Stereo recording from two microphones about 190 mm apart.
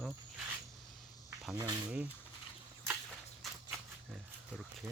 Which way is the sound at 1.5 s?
20° right (ahead or behind).